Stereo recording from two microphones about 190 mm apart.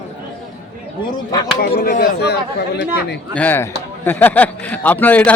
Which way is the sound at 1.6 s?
55° left (ahead or behind).